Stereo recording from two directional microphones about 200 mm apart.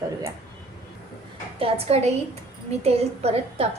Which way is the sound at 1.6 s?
30° right (ahead or behind).